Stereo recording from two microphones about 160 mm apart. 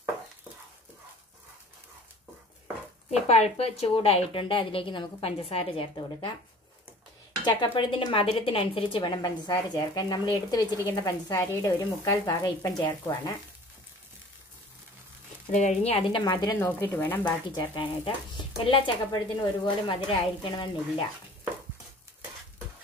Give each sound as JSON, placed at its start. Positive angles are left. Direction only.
{"t": 3.1, "sound": "speech", "side_deg": 40}
{"t": 7.4, "sound": "speech", "side_deg": 30}
{"t": 15.5, "sound": "speech", "side_deg": 45}
{"t": 16.5, "sound": "speech", "side_deg": 10}
{"t": 17.5, "sound": "speech", "side_deg": 30}